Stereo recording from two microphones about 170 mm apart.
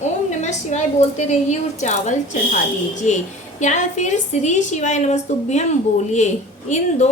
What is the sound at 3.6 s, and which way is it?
A woman's voice, 45° left (ahead or behind).